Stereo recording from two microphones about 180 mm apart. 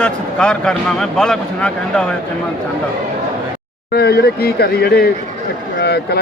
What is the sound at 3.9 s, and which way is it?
Speech, 60° left (ahead or behind).